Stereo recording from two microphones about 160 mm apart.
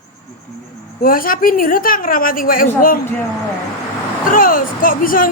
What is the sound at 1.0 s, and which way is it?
Speech, 60° left (ahead or behind).